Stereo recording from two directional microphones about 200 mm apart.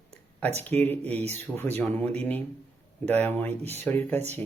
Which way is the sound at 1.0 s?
30° right (ahead or behind).